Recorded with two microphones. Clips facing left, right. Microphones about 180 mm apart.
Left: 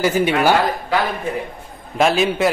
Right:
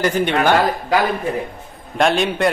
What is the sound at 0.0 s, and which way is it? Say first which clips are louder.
Speech: left 1 dB; 5° left (ahead or behind).